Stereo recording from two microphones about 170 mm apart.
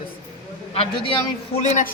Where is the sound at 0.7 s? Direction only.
30° left (ahead or behind).